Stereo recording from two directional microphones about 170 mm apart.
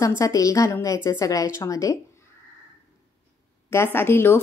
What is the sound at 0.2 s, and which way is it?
A woman's voice, 20° left (ahead or behind).